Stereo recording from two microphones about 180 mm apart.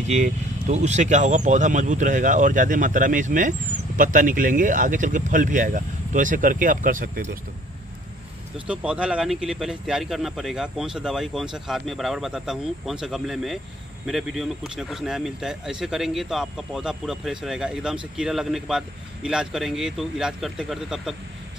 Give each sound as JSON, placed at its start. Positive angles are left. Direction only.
{"t": 0.1, "sound": "speech", "side_deg": -40}
{"t": 8.5, "sound": "speech", "side_deg": -5}